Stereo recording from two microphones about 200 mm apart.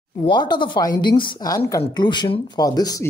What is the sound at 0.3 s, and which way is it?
Speech, 20° left (ahead or behind).